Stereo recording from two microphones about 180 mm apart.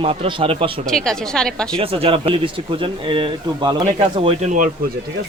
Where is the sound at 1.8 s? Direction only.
30° right (ahead or behind).